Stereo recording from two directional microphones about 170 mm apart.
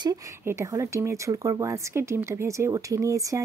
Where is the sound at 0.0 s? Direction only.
20° right (ahead or behind).